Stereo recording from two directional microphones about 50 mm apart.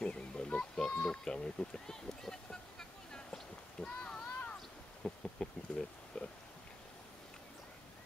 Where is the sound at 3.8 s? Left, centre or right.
Centre.